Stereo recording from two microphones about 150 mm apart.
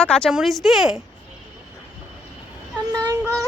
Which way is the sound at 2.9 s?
25° right (ahead or behind).